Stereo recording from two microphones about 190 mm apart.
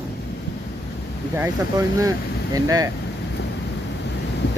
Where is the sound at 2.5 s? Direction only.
20° right (ahead or behind).